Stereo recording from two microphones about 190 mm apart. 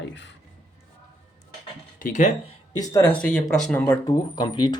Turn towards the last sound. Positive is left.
turn(degrees=20)  # may be behind; listen again after turning